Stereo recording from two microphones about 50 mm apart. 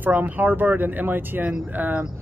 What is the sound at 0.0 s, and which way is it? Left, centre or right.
Speech, right.